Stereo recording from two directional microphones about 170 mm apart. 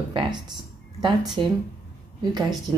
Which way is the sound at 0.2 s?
30° right (ahead or behind).